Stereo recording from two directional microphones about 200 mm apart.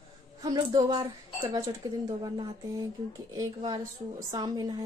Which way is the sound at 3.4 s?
20° right (ahead or behind).